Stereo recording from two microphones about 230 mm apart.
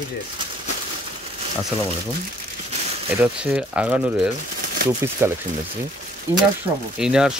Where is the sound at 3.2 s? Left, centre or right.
Centre.